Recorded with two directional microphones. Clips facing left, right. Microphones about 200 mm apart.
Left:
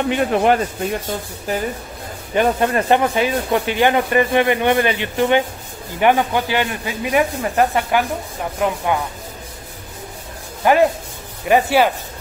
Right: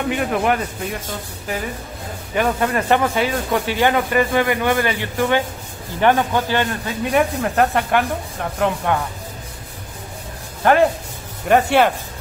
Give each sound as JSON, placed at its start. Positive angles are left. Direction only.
{"t": 0.1, "sound": "speech", "side_deg": 30}
{"t": 2.3, "sound": "speech", "side_deg": 30}
{"t": 10.6, "sound": "speech", "side_deg": 5}